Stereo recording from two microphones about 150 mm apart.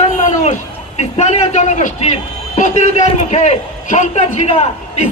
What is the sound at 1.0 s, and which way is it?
A man's voice, 50° left (ahead or behind).